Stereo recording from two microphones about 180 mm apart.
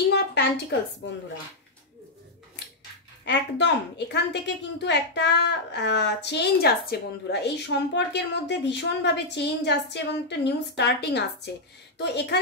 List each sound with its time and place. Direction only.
0.1 s a sound: 70° left (ahead or behind)
1.0 s speech: 90° left
3.3 s a woman's voice: 75° left (ahead or behind)